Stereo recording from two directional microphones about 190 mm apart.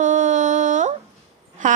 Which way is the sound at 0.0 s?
40° right (ahead or behind).